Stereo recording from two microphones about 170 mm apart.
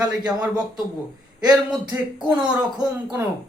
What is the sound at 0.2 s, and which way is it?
Speech, 25° right (ahead or behind).